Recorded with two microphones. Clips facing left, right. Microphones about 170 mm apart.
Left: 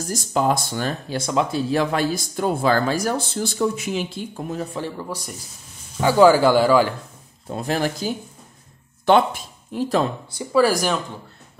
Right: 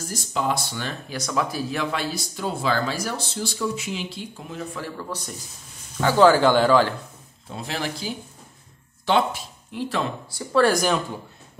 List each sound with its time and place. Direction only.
0.1 s speech: 45° left (ahead or behind)
1.0 s speech: 30° left (ahead or behind); by 4.6 s 45° left (ahead or behind)
4.9 s speech: 10° left (ahead or behind)
7.5 s speech: 45° left (ahead or behind)
10.5 s speech: 5° left (ahead or behind)